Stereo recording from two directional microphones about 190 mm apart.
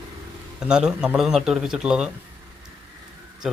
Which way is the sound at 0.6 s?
5° right (ahead or behind).